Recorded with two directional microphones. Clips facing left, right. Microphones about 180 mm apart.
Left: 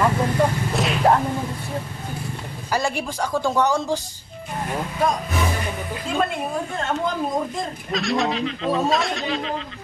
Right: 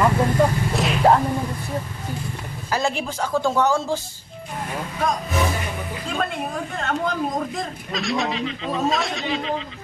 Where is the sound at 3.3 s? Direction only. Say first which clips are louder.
Right 1 dB; centre (ahead or behind).